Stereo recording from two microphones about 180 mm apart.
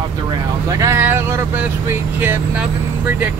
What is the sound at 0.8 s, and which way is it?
Speech, 15° right (ahead or behind).